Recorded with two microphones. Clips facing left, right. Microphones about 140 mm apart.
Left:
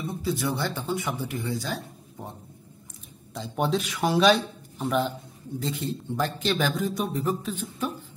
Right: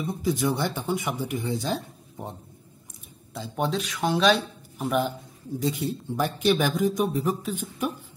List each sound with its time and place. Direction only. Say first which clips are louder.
0.0 s a man's voice: right 3 dB; 15° right (ahead or behind)
3.3 s a man's voice: left 1 dB; centre (ahead or behind)